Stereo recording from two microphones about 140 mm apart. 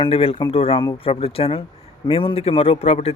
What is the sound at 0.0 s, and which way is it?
Speech, 45° left (ahead or behind).